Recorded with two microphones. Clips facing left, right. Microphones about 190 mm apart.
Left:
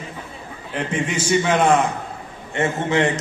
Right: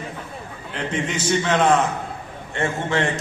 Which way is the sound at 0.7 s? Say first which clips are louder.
Left 2 dB; 10° left (ahead or behind).